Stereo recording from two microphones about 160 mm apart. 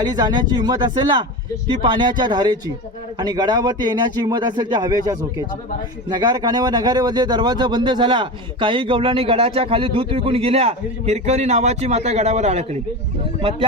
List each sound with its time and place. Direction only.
0.0 s a man's voice: 25° right (ahead or behind)